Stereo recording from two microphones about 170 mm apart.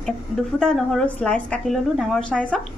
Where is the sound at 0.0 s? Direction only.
5° left (ahead or behind).